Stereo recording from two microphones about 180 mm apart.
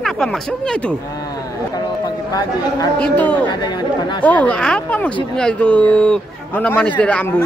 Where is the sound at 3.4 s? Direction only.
25° left (ahead or behind).